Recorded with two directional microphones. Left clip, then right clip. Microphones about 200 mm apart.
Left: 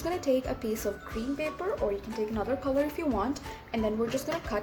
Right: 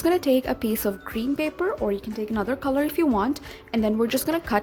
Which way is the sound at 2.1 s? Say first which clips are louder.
Right 4 dB; 55° right (ahead or behind).